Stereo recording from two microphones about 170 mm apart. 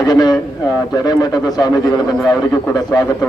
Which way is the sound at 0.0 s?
25° left (ahead or behind).